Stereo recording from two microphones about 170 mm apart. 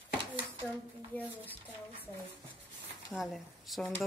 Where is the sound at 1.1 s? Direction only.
10° left (ahead or behind).